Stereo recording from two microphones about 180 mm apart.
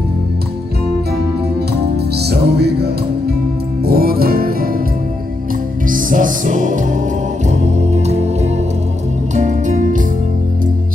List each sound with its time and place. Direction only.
1.7 s music: 65° right (ahead or behind)
5.9 s music: 50° right (ahead or behind)